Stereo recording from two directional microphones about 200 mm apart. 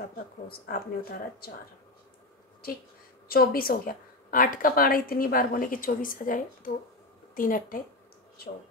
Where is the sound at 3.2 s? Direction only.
50° left (ahead or behind).